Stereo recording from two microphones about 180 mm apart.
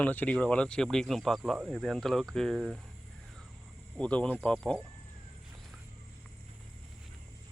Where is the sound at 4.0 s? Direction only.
5° left (ahead or behind).